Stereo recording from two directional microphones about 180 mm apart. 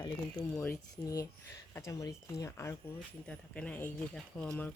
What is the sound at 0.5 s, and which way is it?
Speech, 10° left (ahead or behind).